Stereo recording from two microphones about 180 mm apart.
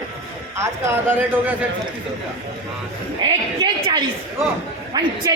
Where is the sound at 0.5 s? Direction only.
15° right (ahead or behind).